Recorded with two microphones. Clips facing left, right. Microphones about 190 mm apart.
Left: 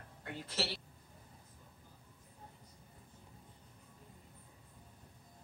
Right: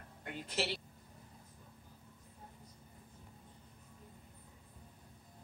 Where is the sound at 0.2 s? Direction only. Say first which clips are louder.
Right 2 dB; 15° right (ahead or behind).